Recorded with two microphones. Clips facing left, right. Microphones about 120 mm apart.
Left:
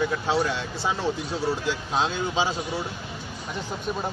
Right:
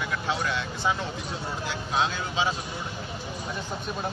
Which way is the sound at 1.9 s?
30° left (ahead or behind).